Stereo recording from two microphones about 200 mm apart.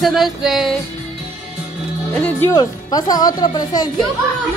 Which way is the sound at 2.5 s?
20° left (ahead or behind).